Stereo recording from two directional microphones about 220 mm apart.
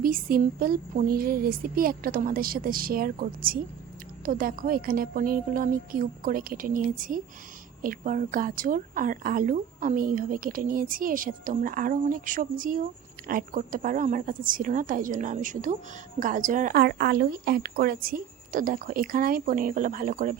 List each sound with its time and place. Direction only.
0.0 s a woman's voice: 40° right (ahead or behind)